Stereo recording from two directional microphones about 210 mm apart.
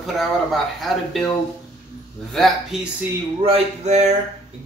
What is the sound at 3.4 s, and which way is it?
Speech, 30° right (ahead or behind).